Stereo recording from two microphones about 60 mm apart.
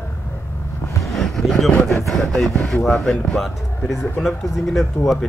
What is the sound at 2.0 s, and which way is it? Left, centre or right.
Speech, centre.